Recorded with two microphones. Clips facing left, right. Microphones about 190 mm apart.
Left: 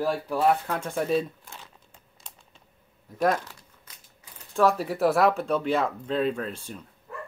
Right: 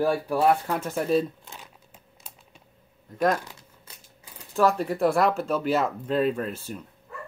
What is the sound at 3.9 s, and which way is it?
Typewriter, 30° right (ahead or behind).